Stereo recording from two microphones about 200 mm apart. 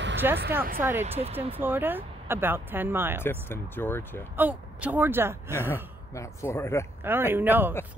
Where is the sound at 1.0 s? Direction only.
30° right (ahead or behind).